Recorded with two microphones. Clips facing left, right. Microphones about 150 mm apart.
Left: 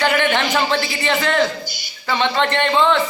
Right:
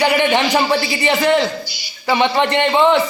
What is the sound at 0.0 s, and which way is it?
A man's voice, 15° right (ahead or behind).